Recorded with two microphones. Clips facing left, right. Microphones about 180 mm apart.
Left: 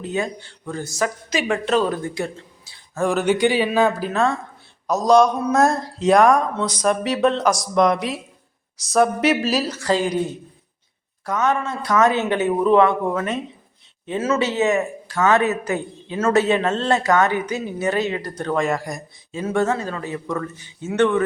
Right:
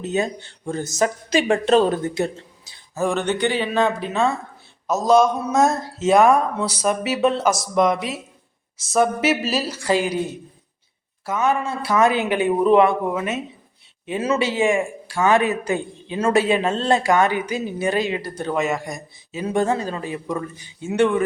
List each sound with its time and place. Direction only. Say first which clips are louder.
0.0 s speech: right 2 dB; 20° right (ahead or behind)
2.9 s speech: left 2 dB; centre (ahead or behind)
9.7 s a woman's voice: even; 10° right (ahead or behind)
11.3 s a woman's voice: even; 10° right (ahead or behind)
15.6 s a man's voice: right 1 dB; 25° right (ahead or behind)
16.1 s a woman's voice: even; 15° right (ahead or behind)